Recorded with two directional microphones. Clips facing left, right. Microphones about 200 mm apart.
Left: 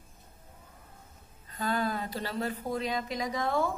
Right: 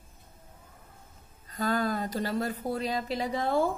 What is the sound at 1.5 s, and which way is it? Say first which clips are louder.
Speech: right 2 dB; 40° right (ahead or behind).